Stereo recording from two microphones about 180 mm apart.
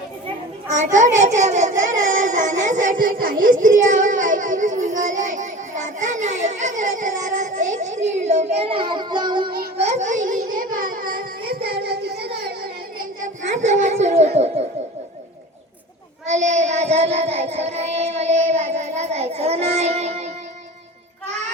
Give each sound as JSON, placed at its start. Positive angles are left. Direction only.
{"t": 0.7, "sound": "a child's voice", "side_deg": -40}
{"t": 9.7, "sound": "a sound", "side_deg": -35}
{"t": 16.2, "sound": "child singing", "side_deg": -40}